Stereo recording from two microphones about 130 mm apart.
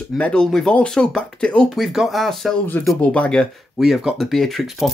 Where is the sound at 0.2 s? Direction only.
5° left (ahead or behind).